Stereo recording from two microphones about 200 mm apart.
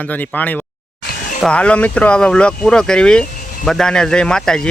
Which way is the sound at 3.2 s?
40° left (ahead or behind).